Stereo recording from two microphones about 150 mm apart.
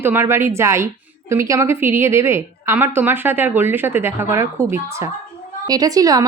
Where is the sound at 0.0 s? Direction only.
15° right (ahead or behind).